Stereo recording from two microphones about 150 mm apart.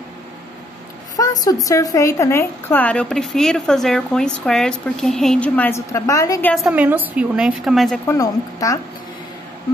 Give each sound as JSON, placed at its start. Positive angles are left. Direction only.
{"t": 1.1, "sound": "a woman's voice", "side_deg": 25}
{"t": 6.7, "sound": "a woman's voice", "side_deg": -10}
{"t": 8.1, "sound": "a woman's voice", "side_deg": 20}